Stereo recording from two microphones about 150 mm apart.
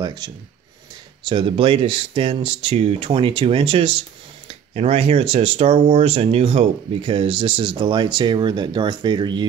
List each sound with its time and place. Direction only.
0.0 s speech: 30° right (ahead or behind)